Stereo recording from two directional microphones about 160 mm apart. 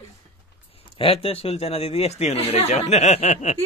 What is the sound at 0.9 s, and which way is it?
Speech, 35° left (ahead or behind).